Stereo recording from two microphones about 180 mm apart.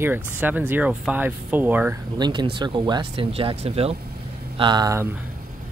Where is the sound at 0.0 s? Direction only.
10° right (ahead or behind).